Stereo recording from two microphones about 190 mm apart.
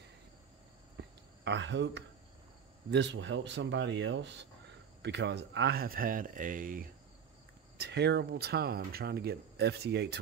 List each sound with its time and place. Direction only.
0.9 s a sound: 70° right (ahead or behind)
2.9 s speech: 70° right (ahead or behind); by 6.9 s 45° right (ahead or behind)
7.7 s speech: 60° right (ahead or behind)